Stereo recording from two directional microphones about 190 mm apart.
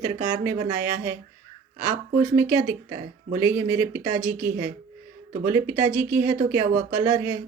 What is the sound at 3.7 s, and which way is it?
Speech, 15° right (ahead or behind).